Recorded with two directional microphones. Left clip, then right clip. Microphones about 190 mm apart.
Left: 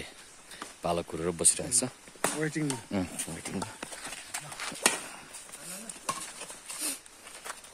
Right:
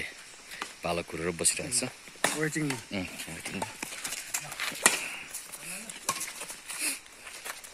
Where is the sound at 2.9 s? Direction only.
35° left (ahead or behind).